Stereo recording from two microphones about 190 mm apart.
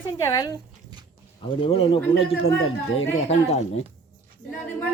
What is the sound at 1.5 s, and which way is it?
Speech, 30° left (ahead or behind).